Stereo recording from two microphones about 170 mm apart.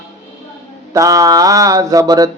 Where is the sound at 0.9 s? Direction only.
20° right (ahead or behind).